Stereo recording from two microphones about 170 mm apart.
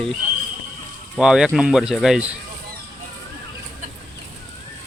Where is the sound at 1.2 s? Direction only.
5° right (ahead or behind).